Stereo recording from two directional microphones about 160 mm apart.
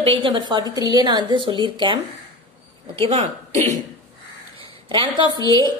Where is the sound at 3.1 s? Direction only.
45° right (ahead or behind).